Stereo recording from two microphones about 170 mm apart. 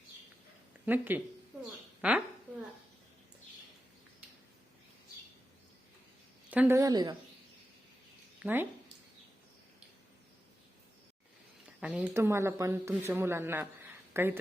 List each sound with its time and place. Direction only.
0.9 s speech: 10° right (ahead or behind)
6.5 s a woman's voice: 10° right (ahead or behind)
8.4 s speech: 5° right (ahead or behind)
11.8 s speech: 5° right (ahead or behind)